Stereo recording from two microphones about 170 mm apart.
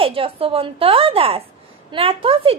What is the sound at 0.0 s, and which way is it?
Speech, 30° right (ahead or behind).